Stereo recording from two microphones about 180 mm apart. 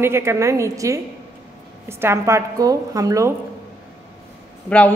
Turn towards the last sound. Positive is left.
turn(degrees=5)  # may be behind; listen again after turning